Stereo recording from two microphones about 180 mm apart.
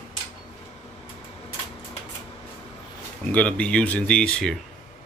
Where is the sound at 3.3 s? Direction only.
5° left (ahead or behind).